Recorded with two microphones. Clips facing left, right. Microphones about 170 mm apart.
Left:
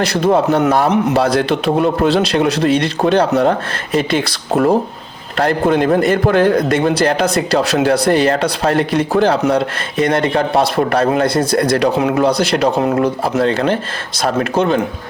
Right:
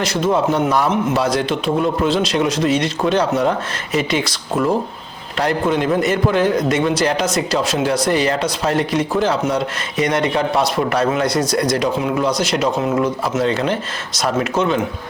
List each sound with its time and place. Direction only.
0.0 s a man's voice: 60° left (ahead or behind)